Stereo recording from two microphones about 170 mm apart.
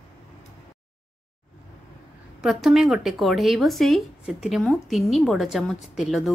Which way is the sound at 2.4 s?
Centre (ahead or behind).